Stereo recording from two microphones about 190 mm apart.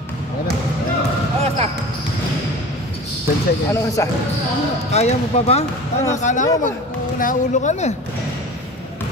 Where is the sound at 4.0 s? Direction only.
15° left (ahead or behind).